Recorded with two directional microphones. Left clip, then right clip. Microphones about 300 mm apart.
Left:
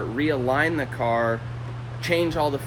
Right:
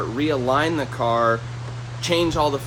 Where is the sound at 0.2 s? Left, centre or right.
Centre.